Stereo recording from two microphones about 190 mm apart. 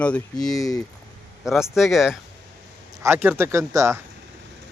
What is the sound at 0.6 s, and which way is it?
Speech, 20° left (ahead or behind).